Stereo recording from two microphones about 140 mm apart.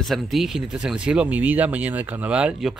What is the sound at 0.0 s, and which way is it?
Speech, centre (ahead or behind).